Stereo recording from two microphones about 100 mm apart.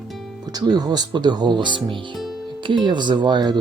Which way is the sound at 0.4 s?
40° right (ahead or behind).